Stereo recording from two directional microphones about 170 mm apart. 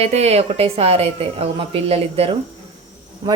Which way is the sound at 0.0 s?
40° right (ahead or behind).